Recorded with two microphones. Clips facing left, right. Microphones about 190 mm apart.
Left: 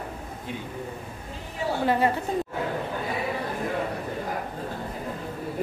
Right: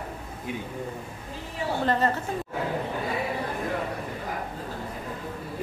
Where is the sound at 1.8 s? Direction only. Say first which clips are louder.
Left 2 dB; 10° left (ahead or behind).